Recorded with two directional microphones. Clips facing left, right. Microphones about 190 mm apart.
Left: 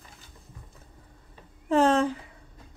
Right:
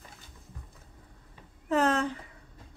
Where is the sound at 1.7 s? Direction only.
30° left (ahead or behind).